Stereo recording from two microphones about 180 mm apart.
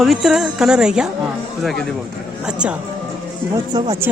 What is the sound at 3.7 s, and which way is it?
Speech, 25° right (ahead or behind).